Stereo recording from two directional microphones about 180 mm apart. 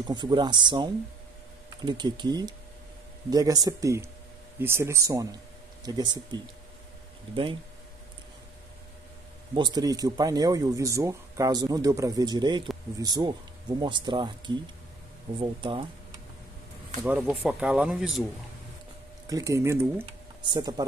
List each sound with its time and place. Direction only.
0.0 s speech: 25° right (ahead or behind)
9.5 s speech: 25° right (ahead or behind)
17.0 s speech: 5° right (ahead or behind)
19.2 s speech: 20° right (ahead or behind)